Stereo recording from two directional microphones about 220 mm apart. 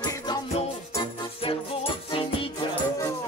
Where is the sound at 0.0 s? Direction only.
15° left (ahead or behind).